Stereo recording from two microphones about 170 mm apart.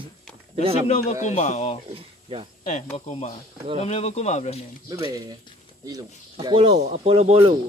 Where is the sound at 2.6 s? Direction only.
45° left (ahead or behind).